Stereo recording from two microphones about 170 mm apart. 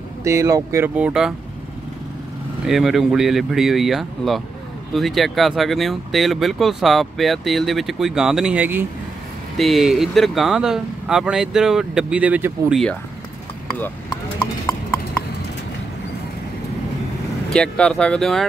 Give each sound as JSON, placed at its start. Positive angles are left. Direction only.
{"t": 0.2, "sound": "speech", "side_deg": -15}
{"t": 2.6, "sound": "speech", "side_deg": 0}
{"t": 17.5, "sound": "speech", "side_deg": 5}